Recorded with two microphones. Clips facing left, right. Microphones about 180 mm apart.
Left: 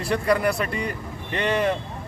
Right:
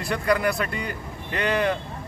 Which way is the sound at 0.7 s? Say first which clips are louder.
Left 3 dB; 30° left (ahead or behind).